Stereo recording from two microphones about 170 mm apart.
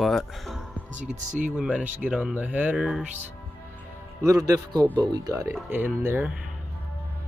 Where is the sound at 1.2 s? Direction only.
45° right (ahead or behind).